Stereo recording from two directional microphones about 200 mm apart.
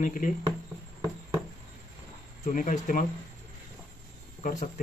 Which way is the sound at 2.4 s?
40° left (ahead or behind).